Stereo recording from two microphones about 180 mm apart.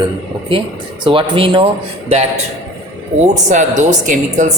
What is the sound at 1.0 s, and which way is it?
Speech, 25° right (ahead or behind).